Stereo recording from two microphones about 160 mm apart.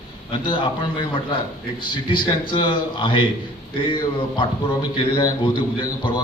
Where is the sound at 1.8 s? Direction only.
30° left (ahead or behind).